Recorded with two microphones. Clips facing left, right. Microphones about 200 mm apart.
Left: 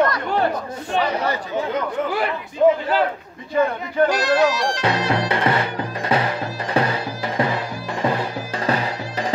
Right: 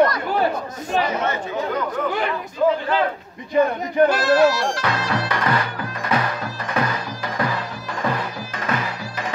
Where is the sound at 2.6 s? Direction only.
25° left (ahead or behind).